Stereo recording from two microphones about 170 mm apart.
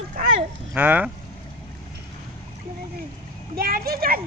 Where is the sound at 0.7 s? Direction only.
10° right (ahead or behind).